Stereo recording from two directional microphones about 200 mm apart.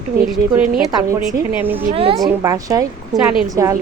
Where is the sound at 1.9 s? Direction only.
30° right (ahead or behind).